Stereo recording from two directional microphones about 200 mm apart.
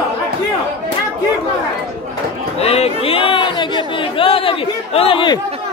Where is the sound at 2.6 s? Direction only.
30° left (ahead or behind).